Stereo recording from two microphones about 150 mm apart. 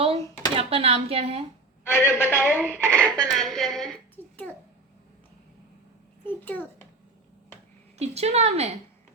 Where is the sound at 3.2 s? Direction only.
Centre (ahead or behind).